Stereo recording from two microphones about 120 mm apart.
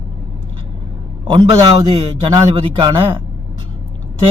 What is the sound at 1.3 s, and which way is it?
A man's voice, 50° right (ahead or behind).